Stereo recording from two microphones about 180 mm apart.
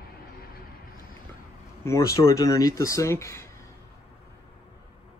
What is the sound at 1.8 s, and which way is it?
Speech, 15° left (ahead or behind).